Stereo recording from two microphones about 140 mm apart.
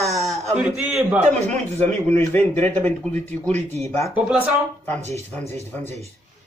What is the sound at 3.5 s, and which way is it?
Speech, 55° right (ahead or behind).